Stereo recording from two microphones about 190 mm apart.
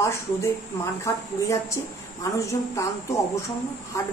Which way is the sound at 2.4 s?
15° left (ahead or behind).